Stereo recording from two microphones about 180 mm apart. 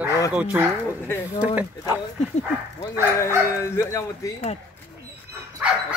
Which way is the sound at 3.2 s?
15° left (ahead or behind).